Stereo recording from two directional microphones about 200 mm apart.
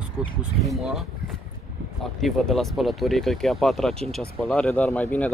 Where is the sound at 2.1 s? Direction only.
Centre (ahead or behind).